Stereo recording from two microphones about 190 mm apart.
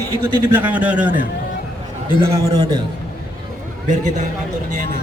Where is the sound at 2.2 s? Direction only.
15° right (ahead or behind).